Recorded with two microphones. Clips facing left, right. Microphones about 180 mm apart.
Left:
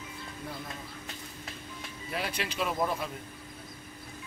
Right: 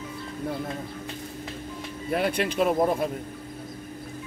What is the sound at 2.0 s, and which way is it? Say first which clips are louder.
Speech: right 10 dB; 55° right (ahead or behind).